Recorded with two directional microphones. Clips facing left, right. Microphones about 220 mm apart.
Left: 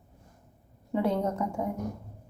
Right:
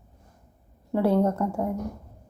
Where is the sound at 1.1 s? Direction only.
55° right (ahead or behind).